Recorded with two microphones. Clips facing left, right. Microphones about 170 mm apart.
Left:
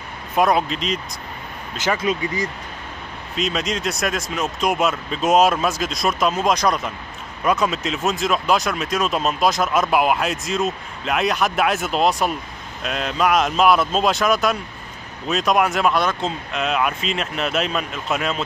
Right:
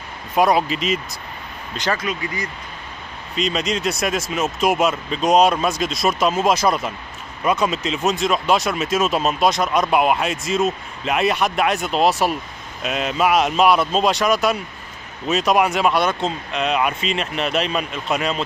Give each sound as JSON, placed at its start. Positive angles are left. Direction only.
{"t": 0.4, "sound": "speech", "side_deg": 0}
{"t": 2.1, "sound": "speech", "side_deg": 30}
{"t": 3.3, "sound": "speech", "side_deg": 0}